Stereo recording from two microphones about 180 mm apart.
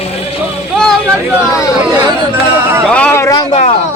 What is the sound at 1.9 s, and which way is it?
Speech, 10° right (ahead or behind).